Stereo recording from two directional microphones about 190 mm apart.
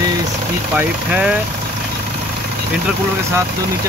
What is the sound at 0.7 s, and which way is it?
Speech, 5° right (ahead or behind).